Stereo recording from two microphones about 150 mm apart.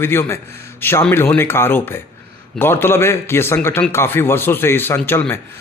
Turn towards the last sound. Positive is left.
turn(degrees=15)  # may be behind; listen again after turning